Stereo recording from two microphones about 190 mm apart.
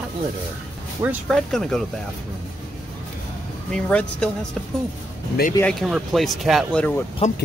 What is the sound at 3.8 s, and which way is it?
Speech, 5° left (ahead or behind).